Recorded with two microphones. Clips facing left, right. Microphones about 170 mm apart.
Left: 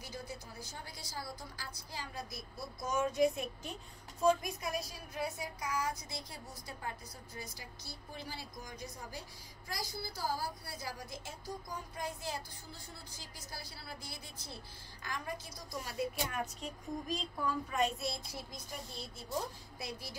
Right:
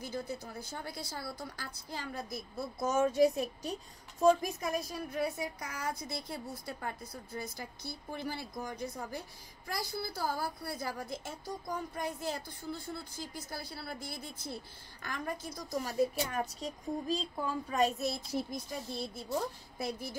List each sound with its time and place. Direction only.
0.0 s speech: 55° right (ahead or behind)
2.9 s a child's voice: 40° right (ahead or behind)
17.7 s a child's voice: 40° right (ahead or behind)
19.8 s a woman's voice: 50° right (ahead or behind)